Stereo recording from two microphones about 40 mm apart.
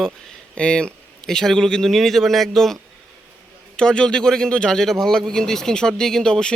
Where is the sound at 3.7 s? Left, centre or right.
Left.